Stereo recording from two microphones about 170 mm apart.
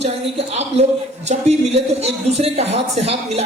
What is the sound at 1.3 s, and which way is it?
A man's voice, 40° right (ahead or behind).